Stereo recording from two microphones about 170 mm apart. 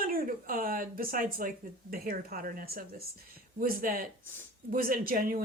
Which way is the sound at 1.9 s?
55° right (ahead or behind).